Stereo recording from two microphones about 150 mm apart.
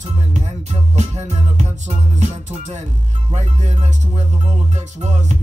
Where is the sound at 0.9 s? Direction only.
50° right (ahead or behind).